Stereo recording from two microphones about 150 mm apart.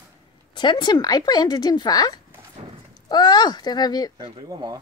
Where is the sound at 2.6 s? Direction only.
50° right (ahead or behind).